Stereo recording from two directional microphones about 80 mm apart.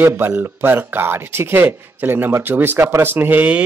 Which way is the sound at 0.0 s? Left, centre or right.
Right.